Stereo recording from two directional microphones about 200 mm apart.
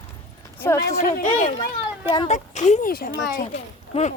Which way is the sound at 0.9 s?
40° left (ahead or behind).